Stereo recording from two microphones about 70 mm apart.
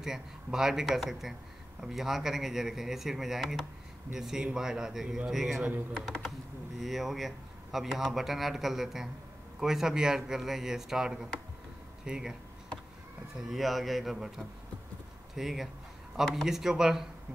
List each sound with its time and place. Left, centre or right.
0.0 s a man's voice: centre
5.9 s speech: centre
6.8 s a man's voice: centre
13.4 s a man's voice: centre